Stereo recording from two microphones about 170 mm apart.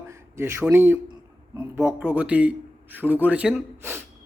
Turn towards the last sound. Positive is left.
turn(degrees=-15)  # may be behind; listen again after turning